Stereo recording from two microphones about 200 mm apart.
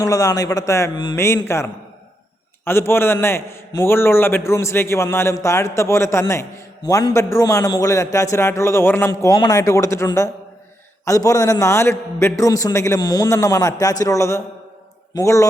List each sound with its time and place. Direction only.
0.0 s a man's voice: 15° left (ahead or behind)